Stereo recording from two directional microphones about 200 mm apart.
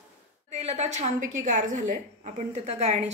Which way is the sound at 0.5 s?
35° right (ahead or behind).